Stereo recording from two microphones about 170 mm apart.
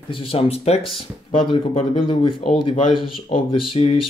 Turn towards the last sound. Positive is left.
turn(degrees=35)  # may be behind; listen again after turning